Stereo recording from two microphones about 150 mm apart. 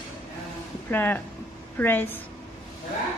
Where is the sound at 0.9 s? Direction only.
15° left (ahead or behind).